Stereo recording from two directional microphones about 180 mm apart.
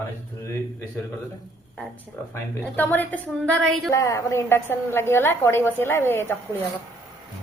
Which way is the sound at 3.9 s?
15° left (ahead or behind).